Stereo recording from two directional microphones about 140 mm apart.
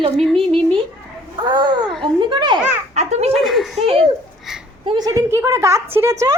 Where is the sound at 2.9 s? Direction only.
50° right (ahead or behind).